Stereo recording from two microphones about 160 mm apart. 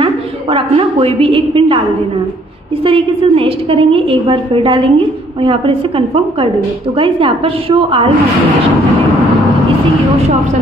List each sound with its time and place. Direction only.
0.0 s a woman's voice: 30° right (ahead or behind)
2.8 s a woman's voice: 35° right (ahead or behind)